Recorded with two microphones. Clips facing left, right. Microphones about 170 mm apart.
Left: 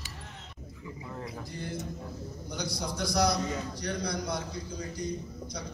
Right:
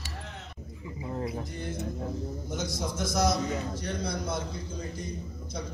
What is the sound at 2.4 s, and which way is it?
A man's voice, 20° right (ahead or behind).